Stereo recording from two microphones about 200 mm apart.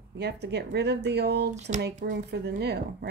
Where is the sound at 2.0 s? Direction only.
50° right (ahead or behind).